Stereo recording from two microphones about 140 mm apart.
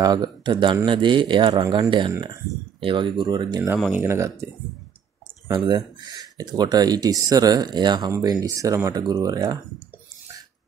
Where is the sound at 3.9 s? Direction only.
20° right (ahead or behind).